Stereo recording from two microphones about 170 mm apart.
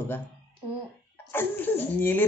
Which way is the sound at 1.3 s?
15° left (ahead or behind).